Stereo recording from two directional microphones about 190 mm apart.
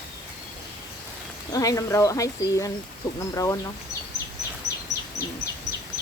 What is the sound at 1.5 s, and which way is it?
Speech, 15° left (ahead or behind).